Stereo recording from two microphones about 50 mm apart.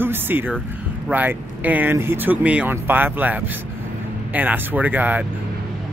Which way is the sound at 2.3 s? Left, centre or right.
Right.